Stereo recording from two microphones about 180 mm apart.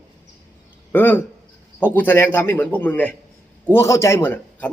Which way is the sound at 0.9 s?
10° left (ahead or behind).